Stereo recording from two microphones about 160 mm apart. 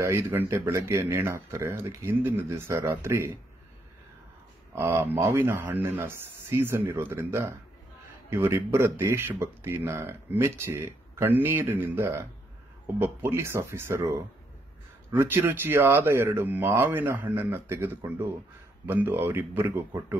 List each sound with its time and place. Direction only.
0.0 s speech: 15° right (ahead or behind)
4.7 s speech: 15° right (ahead or behind)